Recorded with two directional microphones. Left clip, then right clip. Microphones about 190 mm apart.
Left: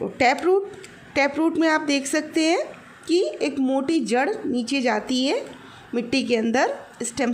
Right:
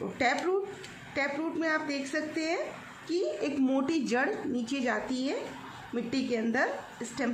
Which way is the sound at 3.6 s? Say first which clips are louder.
Left 7 dB; 15° left (ahead or behind).